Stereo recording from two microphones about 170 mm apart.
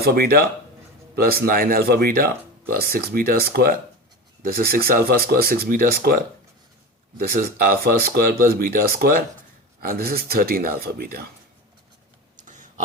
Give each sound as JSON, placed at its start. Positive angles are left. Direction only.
{"t": 0.0, "sound": "speech", "side_deg": -60}
{"t": 7.2, "sound": "speech", "side_deg": -60}
{"t": 12.5, "sound": "clicking", "side_deg": -45}